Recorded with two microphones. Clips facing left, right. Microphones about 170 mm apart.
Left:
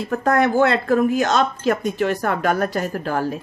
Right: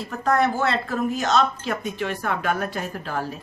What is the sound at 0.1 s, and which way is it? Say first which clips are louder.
A woman's voice: left 4 dB; 55° left (ahead or behind).